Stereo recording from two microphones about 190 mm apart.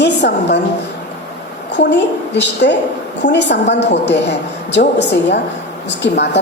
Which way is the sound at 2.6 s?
65° left (ahead or behind).